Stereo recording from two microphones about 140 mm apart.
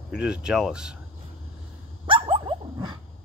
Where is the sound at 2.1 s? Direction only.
40° right (ahead or behind).